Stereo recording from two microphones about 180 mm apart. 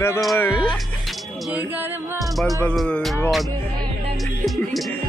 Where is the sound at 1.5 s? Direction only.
10° right (ahead or behind).